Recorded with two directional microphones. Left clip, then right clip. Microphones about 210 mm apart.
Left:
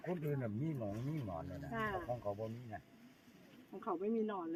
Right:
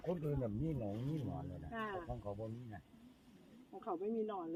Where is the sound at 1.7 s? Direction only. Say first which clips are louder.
Left 4 dB; 40° left (ahead or behind).